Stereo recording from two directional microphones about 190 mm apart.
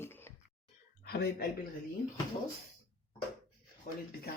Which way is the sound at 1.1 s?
55° left (ahead or behind).